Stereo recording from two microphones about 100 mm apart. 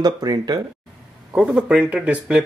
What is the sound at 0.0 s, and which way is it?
Speech, 40° right (ahead or behind).